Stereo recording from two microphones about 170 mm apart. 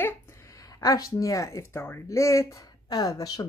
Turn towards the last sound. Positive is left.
turn(degrees=20)  # may be behind; listen again after turning